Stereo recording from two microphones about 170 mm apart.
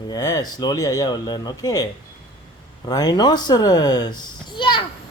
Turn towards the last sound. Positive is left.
turn(degrees=25)  # may be behind; listen again after turning